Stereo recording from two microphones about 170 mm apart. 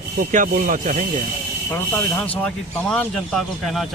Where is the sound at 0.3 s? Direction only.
50° right (ahead or behind).